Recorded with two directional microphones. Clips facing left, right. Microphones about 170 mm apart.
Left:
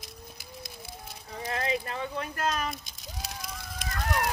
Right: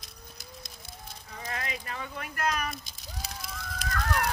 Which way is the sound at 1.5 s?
30° left (ahead or behind).